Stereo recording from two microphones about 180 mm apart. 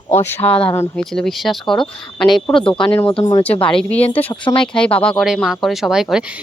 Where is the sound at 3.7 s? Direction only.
5° left (ahead or behind).